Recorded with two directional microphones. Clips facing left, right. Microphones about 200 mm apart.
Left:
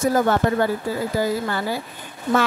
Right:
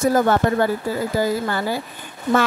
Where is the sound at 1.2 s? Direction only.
45° right (ahead or behind).